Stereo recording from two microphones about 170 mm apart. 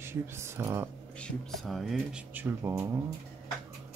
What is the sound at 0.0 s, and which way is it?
Speech, 15° right (ahead or behind).